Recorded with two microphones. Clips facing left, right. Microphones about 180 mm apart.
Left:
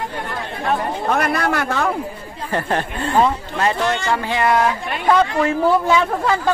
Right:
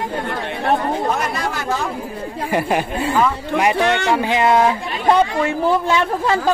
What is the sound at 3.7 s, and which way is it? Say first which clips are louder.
Speech: right 3 dB; 65° right (ahead or behind).